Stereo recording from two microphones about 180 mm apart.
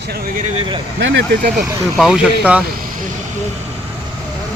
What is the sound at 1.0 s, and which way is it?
Speech, 90° right.